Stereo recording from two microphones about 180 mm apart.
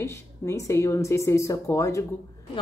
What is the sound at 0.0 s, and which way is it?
A woman's voice, 15° left (ahead or behind).